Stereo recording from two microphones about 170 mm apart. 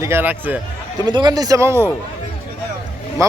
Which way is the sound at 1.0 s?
25° right (ahead or behind).